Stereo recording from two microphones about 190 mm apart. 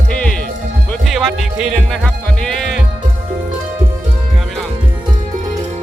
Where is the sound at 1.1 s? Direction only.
Centre (ahead or behind).